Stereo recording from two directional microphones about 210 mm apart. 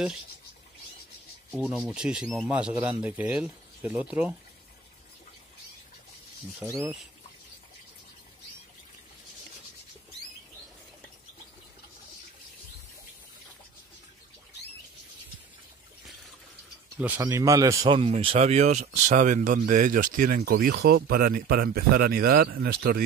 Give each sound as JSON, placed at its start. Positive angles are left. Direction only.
{"t": 1.5, "sound": "speech", "side_deg": -5}
{"t": 6.6, "sound": "speech", "side_deg": -15}
{"t": 17.2, "sound": "speech", "side_deg": -15}